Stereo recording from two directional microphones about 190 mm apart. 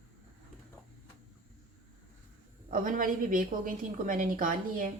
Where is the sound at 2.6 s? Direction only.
45° right (ahead or behind).